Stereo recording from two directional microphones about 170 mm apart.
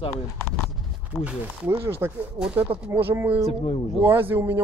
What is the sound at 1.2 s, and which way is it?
Speech, 15° right (ahead or behind).